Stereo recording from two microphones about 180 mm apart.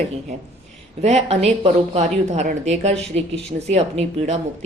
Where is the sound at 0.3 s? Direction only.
40° right (ahead or behind).